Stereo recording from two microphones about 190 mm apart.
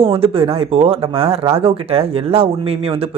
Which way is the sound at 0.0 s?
30° right (ahead or behind).